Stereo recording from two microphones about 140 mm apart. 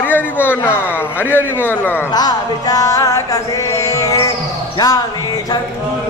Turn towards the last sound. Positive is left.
turn(degrees=25)  # may be behind; listen again after turning